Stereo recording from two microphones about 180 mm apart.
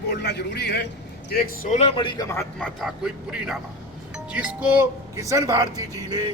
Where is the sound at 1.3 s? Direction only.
45° left (ahead or behind); by 2.3 s 30° left (ahead or behind).